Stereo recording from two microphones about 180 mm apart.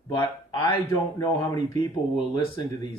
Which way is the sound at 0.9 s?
15° left (ahead or behind).